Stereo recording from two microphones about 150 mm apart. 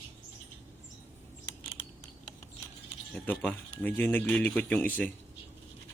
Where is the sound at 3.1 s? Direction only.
10° left (ahead or behind).